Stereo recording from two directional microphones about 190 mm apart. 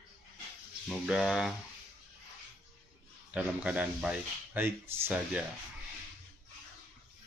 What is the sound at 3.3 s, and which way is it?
Speech, 5° right (ahead or behind).